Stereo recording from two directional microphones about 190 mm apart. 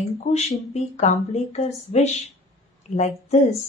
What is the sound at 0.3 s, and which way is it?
A woman's voice, 35° left (ahead or behind).